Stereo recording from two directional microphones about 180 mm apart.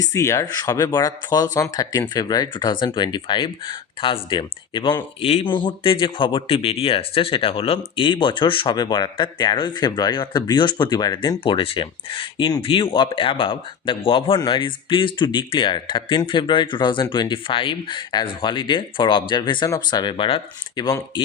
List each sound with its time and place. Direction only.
0.1 s speech: 15° left (ahead or behind)